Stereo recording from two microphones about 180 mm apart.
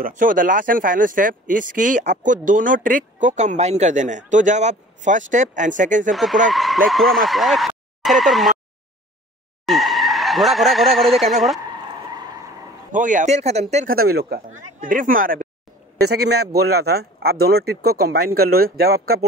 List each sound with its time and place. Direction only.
0.0 s speech: 50° right (ahead or behind)
6.5 s speech: centre (ahead or behind)
9.7 s speech: centre (ahead or behind)
12.1 s skidding: 20° right (ahead or behind)
12.9 s speech: 45° right (ahead or behind)
13.8 s speech: 60° right (ahead or behind)
14.5 s speech: 50° right (ahead or behind)
16.0 s speech: 65° right (ahead or behind)